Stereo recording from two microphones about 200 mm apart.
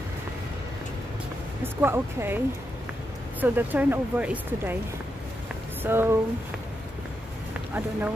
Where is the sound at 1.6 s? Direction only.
10° right (ahead or behind).